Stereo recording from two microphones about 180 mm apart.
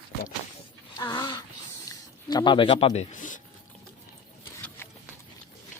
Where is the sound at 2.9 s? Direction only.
40° left (ahead or behind).